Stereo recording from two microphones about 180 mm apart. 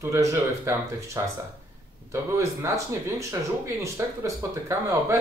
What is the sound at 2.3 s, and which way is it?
Speech, 15° right (ahead or behind).